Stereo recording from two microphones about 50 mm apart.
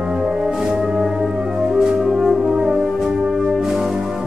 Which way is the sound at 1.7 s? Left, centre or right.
Centre.